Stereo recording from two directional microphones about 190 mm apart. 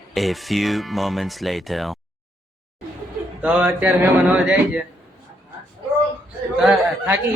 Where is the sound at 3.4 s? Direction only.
5° right (ahead or behind).